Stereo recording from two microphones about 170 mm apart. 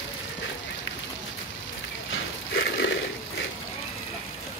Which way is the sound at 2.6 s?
90° left.